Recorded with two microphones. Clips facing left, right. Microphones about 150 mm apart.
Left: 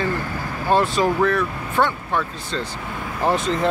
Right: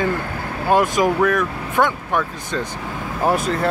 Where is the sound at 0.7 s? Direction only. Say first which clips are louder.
Right 2 dB; 10° right (ahead or behind).